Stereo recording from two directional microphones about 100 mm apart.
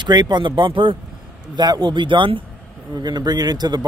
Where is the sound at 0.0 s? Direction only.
45° right (ahead or behind).